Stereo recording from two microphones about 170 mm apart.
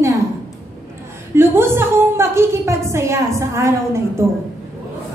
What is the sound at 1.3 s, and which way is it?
A woman's voice, 15° right (ahead or behind).